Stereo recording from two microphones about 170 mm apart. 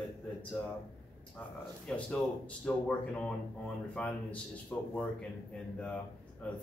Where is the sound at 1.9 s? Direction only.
5° left (ahead or behind).